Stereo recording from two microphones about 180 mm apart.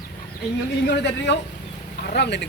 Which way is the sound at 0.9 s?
75° left (ahead or behind).